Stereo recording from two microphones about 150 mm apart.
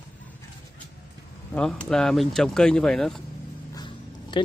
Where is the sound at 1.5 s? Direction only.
5° left (ahead or behind).